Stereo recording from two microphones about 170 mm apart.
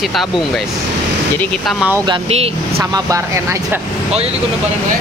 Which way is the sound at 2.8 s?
20° right (ahead or behind).